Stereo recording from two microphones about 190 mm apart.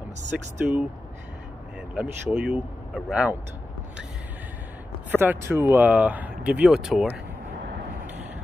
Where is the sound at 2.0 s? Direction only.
5° right (ahead or behind).